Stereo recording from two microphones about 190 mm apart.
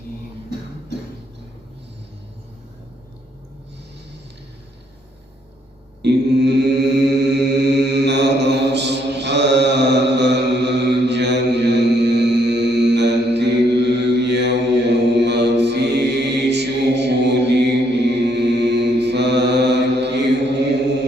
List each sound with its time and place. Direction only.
6.0 s mantra: 65° right (ahead or behind)